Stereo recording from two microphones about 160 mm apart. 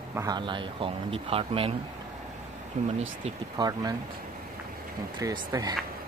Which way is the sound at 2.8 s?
50° right (ahead or behind).